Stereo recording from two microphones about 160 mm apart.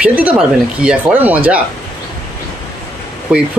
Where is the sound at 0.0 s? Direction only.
10° right (ahead or behind).